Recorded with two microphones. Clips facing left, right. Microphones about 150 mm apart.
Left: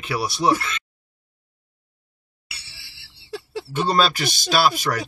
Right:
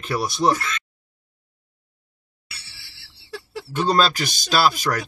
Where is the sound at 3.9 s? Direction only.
5° left (ahead or behind).